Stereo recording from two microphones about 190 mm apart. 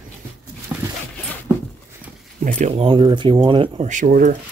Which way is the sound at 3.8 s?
40° right (ahead or behind).